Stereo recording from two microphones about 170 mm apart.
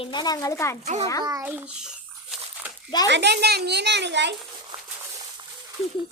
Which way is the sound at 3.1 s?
80° right.